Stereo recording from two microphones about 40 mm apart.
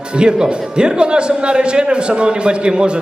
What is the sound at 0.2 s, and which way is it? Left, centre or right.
Speech, right.